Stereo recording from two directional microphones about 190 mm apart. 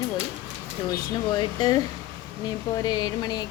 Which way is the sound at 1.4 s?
20° left (ahead or behind).